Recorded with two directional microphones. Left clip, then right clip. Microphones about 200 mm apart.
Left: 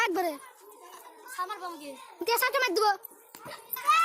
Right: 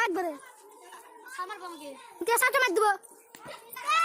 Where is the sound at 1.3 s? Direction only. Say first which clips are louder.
Left 3 dB; 35° left (ahead or behind).